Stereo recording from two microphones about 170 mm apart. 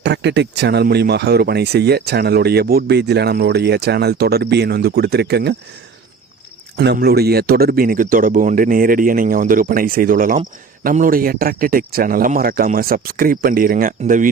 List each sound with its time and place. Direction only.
0.0 s speech: 85° right
6.7 s speech: 70° right (ahead or behind); by 14.3 s 50° right (ahead or behind)